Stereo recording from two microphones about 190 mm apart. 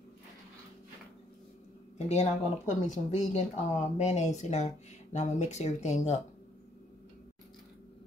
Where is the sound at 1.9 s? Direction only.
35° left (ahead or behind).